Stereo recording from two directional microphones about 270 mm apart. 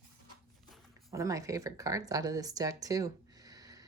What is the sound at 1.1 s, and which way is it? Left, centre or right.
Speech, centre.